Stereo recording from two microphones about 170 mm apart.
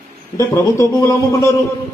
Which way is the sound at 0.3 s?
15° left (ahead or behind).